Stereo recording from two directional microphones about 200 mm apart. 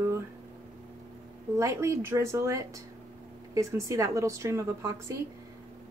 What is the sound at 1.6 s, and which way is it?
A woman's voice, 15° right (ahead or behind).